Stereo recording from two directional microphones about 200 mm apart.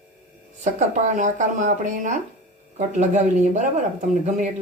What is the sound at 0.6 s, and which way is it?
Speech, 35° right (ahead or behind).